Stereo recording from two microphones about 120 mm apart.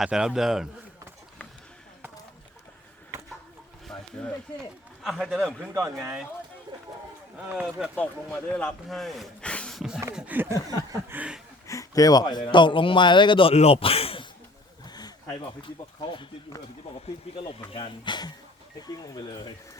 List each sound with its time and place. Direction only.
0.0 s speech: 5° right (ahead or behind)
3.8 s a sound: 5° left (ahead or behind)
5.0 s speech: 5° right (ahead or behind)
5.7 s speech: 25° right (ahead or behind)
7.3 s speech: 10° right (ahead or behind)
7.9 s speech: 10° left (ahead or behind)
10.2 s speech: 15° right (ahead or behind)
10.7 s a sound: 30° right (ahead or behind)
11.1 s speech: 10° right (ahead or behind)
11.7 s speech: 30° left (ahead or behind); by 14.3 s 50° left (ahead or behind)
14.8 s a sound: 35° left (ahead or behind)
15.3 s speech: 45° left (ahead or behind)
17.7 s speech: 45° left (ahead or behind)